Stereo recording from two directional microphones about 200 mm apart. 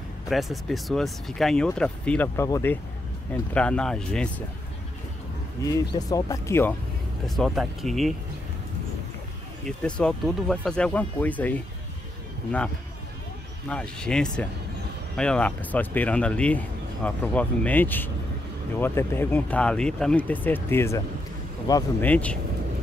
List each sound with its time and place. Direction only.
0.3 s speech: centre (ahead or behind)
5.9 s speech: 15° left (ahead or behind)
7.2 s speech: centre (ahead or behind)
9.7 s speech: 5° left (ahead or behind)
22.0 s speech: 5° left (ahead or behind)